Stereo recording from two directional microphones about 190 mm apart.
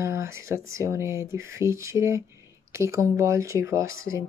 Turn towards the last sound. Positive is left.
turn(degrees=-15)  # may be behind; listen again after turning